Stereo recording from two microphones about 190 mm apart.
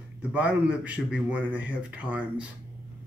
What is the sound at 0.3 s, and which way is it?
Speech, 5° right (ahead or behind).